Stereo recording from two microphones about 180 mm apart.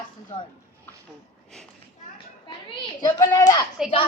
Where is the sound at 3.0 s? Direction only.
15° left (ahead or behind).